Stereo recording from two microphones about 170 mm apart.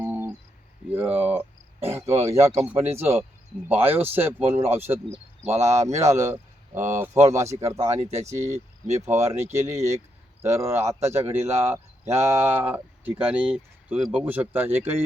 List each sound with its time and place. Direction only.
0.0 s a sound: 15° right (ahead or behind)
0.9 s speech: 10° right (ahead or behind)
5.5 s speech: 40° right (ahead or behind)
6.0 s speech: 15° right (ahead or behind)